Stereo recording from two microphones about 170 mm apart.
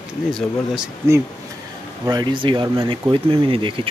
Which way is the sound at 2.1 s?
25° right (ahead or behind).